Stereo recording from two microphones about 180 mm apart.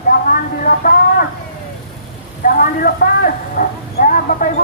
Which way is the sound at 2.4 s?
50° left (ahead or behind).